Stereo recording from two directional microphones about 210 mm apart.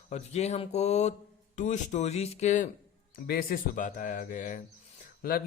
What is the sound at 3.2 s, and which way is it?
Speech, 45° left (ahead or behind).